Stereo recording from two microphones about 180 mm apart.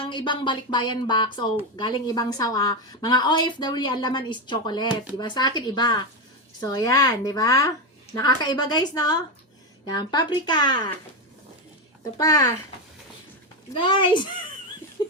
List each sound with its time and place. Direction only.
0.0 s speech: 25° left (ahead or behind)
12.1 s speech: 20° left (ahead or behind)
13.7 s speech: 25° left (ahead or behind)